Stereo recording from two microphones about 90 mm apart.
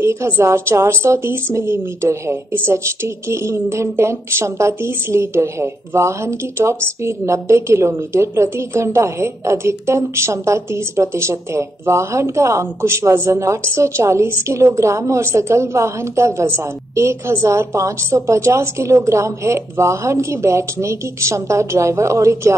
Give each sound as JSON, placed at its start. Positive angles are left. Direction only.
{"t": 0.0, "sound": "a woman's voice", "side_deg": -30}